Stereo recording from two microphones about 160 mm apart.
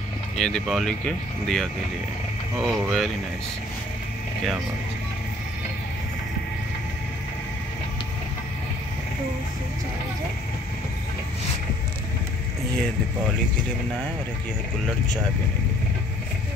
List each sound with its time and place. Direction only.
0.4 s speech: centre (ahead or behind)